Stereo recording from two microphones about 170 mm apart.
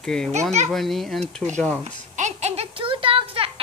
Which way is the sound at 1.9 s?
45° right (ahead or behind).